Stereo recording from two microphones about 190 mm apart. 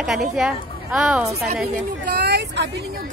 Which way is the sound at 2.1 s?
60° right (ahead or behind).